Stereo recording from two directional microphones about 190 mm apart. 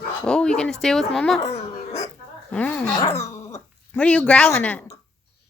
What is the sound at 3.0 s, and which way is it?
Dog, 15° left (ahead or behind).